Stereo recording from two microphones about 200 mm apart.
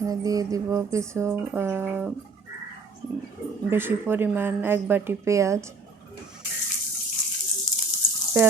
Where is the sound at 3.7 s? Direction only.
10° right (ahead or behind).